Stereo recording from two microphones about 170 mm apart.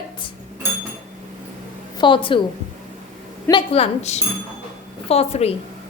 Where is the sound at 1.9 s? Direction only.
30° left (ahead or behind).